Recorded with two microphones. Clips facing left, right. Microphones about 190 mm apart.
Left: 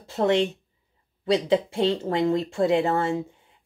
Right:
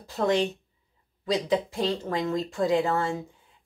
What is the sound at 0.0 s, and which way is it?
Speech, 25° left (ahead or behind).